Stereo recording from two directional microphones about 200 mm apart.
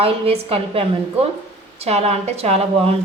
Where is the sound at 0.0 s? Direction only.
30° right (ahead or behind).